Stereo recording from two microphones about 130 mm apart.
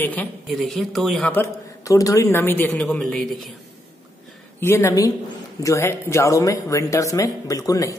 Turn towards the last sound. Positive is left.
turn(degrees=25)  # may be behind; listen again after turning